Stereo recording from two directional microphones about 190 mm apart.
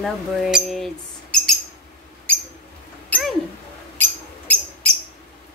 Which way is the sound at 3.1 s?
10° left (ahead or behind).